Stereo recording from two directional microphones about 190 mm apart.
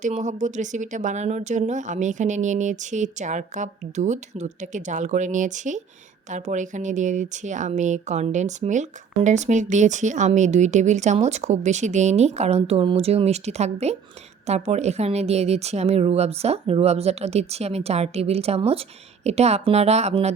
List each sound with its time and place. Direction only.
0.0 s speech: 40° right (ahead or behind)